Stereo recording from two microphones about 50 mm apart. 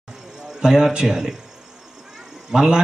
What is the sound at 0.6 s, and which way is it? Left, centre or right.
Speech, centre.